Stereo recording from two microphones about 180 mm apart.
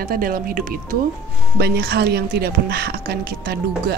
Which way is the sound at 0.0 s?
50° right (ahead or behind).